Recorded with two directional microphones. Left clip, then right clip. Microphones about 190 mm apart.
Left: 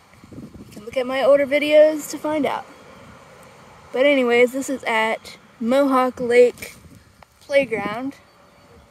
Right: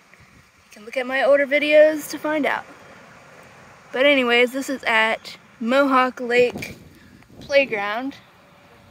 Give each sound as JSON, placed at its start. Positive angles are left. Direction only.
{"t": 0.8, "sound": "speech", "side_deg": 25}
{"t": 3.9, "sound": "speech", "side_deg": 15}
{"t": 7.4, "sound": "speech", "side_deg": 10}